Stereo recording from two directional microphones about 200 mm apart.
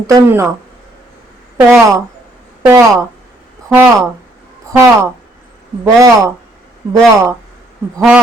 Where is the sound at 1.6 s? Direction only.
10° right (ahead or behind).